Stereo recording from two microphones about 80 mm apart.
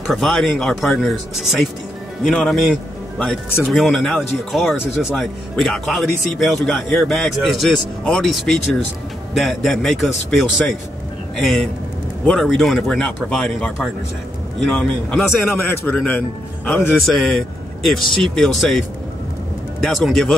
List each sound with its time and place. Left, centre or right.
0.0 s speech: centre
12.3 s speech: centre
14.7 s speech: centre
15.4 s a man's voice: left
17.0 s speech: centre
19.8 s speech: centre